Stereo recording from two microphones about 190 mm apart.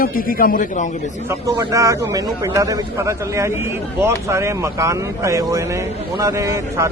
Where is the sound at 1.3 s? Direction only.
15° right (ahead or behind).